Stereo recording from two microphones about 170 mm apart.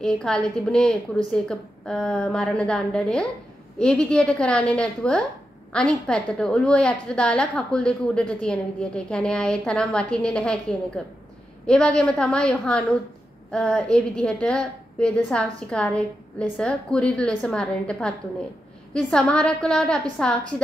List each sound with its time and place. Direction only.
0.0 s a woman's voice: 5° left (ahead or behind)